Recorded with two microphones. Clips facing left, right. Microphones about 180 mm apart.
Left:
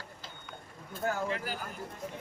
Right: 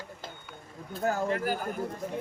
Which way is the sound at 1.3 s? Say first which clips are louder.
Right 7 dB; 50° right (ahead or behind).